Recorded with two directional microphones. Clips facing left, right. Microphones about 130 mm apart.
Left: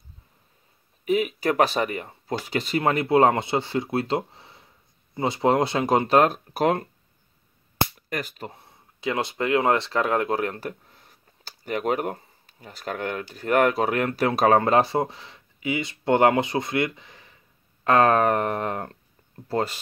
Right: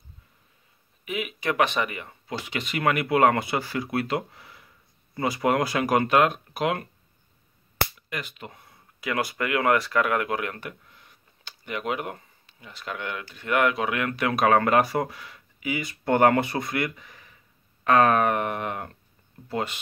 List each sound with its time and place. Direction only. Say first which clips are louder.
1.0 s speech: left 6 dB; 40° left (ahead or behind)
8.1 s speech: left 4 dB; 40° left (ahead or behind)